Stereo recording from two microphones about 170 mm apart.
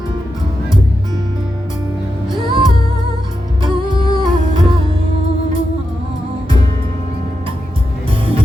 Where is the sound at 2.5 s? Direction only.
30° right (ahead or behind).